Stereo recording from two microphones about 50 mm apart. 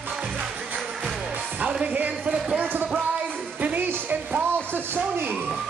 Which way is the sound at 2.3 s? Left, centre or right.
Centre.